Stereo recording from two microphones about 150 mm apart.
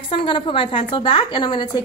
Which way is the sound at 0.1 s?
35° left (ahead or behind).